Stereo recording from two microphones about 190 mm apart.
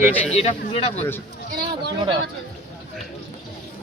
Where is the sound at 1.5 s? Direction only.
60° right (ahead or behind).